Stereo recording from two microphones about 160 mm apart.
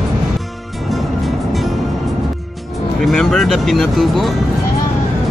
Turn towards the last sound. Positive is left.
turn(degrees=0)  # may be behind; listen again after turning